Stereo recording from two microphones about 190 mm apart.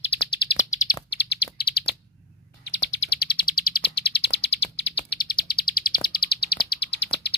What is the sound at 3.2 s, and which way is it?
Bird, 55° left (ahead or behind).